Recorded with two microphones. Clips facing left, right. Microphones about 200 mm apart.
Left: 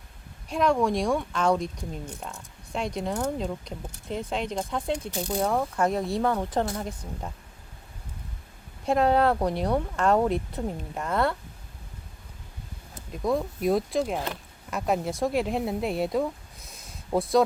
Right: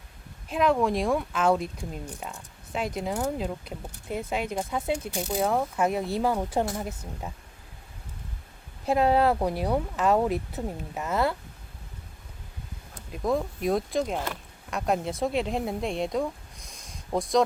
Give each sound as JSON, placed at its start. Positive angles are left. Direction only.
{"t": 0.4, "sound": "speech", "side_deg": 0}
{"t": 8.9, "sound": "speech", "side_deg": -5}
{"t": 12.9, "sound": "a woman's voice", "side_deg": 0}